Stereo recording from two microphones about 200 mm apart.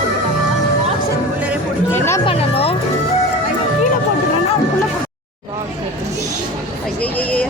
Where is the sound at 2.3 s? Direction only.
30° left (ahead or behind).